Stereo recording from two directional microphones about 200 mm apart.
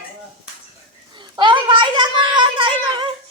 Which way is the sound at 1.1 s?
25° right (ahead or behind).